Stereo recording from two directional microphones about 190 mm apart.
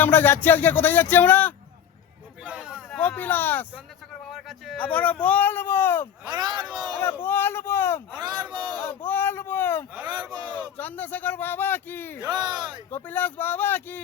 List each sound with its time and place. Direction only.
0.0 s speech: 10° left (ahead or behind)
2.4 s a sound: 5° right (ahead or behind)
3.0 s speech: 10° left (ahead or behind)
6.2 s speech: 20° right (ahead or behind)
7.0 s speech: 10° left (ahead or behind)
8.2 s speech: 20° right (ahead or behind)
8.8 s speech: 10° left (ahead or behind)
12.2 s speech: 20° right (ahead or behind)
12.9 s speech: 10° left (ahead or behind)